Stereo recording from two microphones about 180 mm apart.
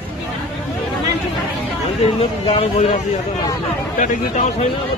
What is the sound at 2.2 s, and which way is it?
Speech, 30° left (ahead or behind).